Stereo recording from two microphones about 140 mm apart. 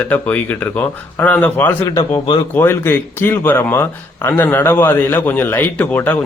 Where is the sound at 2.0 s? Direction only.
35° left (ahead or behind).